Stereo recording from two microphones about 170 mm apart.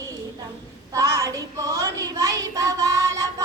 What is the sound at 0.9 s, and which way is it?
Child singing, 15° right (ahead or behind).